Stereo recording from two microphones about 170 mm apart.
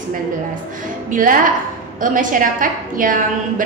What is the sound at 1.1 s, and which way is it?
A woman's voice, 55° right (ahead or behind).